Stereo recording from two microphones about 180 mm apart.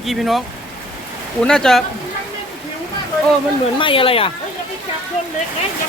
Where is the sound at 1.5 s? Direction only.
5° left (ahead or behind).